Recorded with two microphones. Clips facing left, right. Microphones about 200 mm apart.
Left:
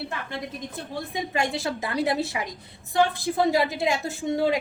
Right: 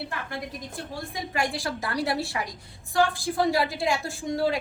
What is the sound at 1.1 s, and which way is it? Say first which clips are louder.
A woman's voice: left 2 dB; 20° left (ahead or behind).